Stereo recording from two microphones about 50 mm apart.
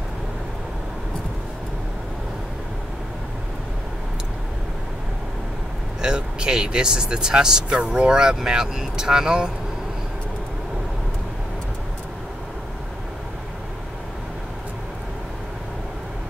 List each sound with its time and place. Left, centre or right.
5.9 s speech: centre